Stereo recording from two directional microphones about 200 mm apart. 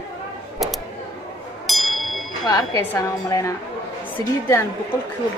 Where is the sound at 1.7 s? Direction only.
Centre (ahead or behind).